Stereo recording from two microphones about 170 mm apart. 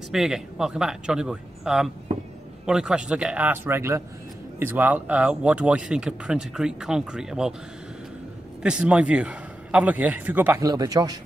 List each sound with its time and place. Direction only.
0.1 s a man's voice: 5° right (ahead or behind)
8.6 s a man's voice: 5° right (ahead or behind); by 11.1 s 25° right (ahead or behind)